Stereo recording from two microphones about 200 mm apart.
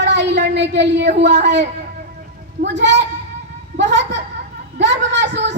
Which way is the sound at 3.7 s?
60° right (ahead or behind).